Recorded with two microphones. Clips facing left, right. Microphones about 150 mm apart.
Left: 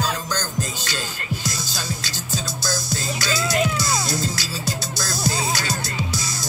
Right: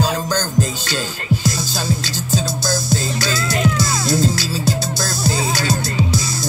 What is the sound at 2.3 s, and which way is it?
Music, 25° right (ahead or behind).